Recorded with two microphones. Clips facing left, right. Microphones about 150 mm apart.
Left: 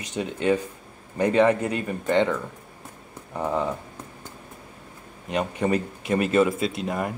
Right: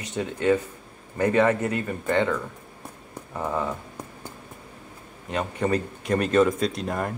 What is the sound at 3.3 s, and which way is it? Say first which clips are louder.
Speech: left 2 dB; 15° left (ahead or behind).